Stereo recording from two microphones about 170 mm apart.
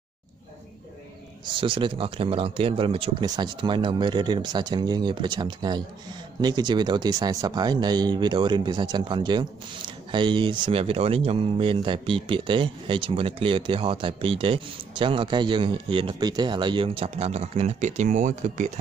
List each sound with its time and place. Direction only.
1.5 s speech: 30° right (ahead or behind); by 18.7 s 45° right (ahead or behind)